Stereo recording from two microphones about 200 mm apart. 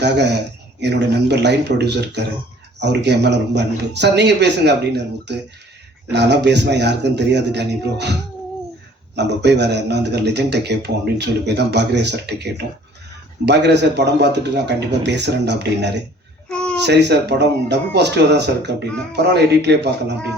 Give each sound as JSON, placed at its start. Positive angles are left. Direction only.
{"t": 0.0, "sound": "a man's voice", "side_deg": -60}
{"t": 9.1, "sound": "a man's voice", "side_deg": -60}
{"t": 16.5, "sound": "a sound", "side_deg": 5}
{"t": 16.8, "sound": "a man's voice", "side_deg": -60}